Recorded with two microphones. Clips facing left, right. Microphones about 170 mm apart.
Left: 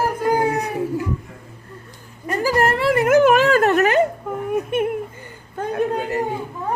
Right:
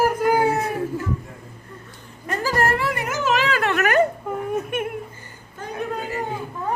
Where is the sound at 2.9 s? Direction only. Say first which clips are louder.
Left 10 dB; 55° left (ahead or behind).